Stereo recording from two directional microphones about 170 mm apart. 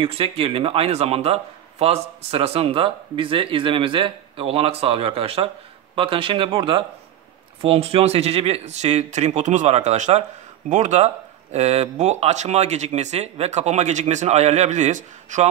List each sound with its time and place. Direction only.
0.0 s a man's voice: 35° right (ahead or behind)